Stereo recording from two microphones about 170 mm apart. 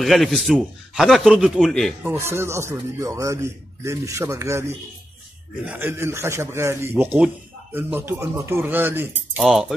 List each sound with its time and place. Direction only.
0.0 s a man's voice: centre (ahead or behind)
2.1 s a man's voice: 15° right (ahead or behind)
9.4 s a man's voice: centre (ahead or behind)